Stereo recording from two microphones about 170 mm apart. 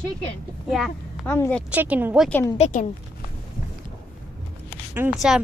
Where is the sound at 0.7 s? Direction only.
Centre (ahead or behind).